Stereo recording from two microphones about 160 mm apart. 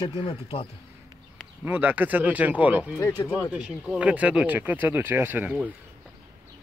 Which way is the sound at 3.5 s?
5° right (ahead or behind).